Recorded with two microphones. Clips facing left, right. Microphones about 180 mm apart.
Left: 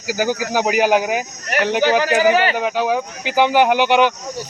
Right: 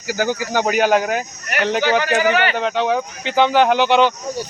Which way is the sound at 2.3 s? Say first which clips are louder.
Left 2 dB; 35° left (ahead or behind).